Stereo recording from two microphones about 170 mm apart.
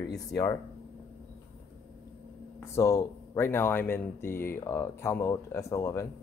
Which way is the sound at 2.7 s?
15° left (ahead or behind).